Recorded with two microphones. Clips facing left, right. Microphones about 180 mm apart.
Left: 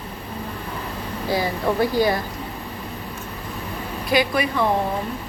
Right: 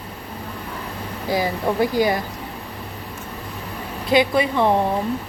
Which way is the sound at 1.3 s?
15° right (ahead or behind).